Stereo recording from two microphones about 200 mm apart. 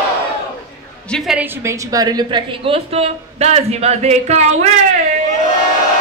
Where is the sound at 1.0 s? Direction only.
Centre (ahead or behind).